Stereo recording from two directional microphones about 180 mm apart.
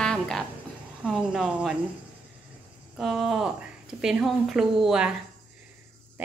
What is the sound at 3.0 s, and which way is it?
A woman's voice, centre (ahead or behind).